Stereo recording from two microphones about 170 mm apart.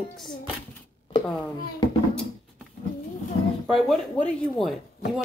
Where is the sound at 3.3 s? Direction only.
30° left (ahead or behind).